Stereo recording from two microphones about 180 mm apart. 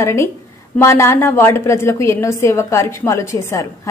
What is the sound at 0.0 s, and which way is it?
A man's voice, 15° left (ahead or behind).